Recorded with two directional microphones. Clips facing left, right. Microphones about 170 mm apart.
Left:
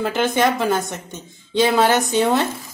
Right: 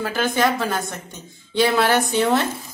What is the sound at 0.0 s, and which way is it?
A woman's voice, 20° left (ahead or behind).